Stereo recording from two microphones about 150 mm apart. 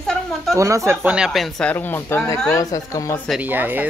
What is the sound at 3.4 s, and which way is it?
Speech, 10° right (ahead or behind).